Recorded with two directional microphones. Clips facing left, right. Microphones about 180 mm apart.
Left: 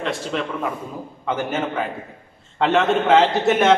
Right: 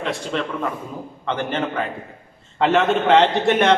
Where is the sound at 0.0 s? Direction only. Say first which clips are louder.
Even; centre (ahead or behind).